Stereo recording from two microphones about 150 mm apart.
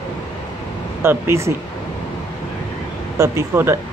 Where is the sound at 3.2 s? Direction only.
15° right (ahead or behind).